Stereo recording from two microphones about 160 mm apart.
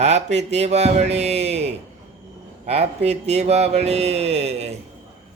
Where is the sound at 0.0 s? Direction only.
45° right (ahead or behind).